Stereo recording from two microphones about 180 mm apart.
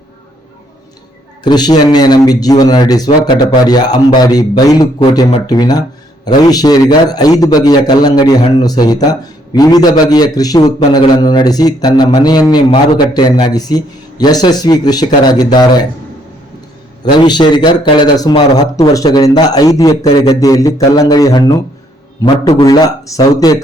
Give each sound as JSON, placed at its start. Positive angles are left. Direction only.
{"t": 1.5, "sound": "a man's voice", "side_deg": 25}
{"t": 17.2, "sound": "a man's voice", "side_deg": 25}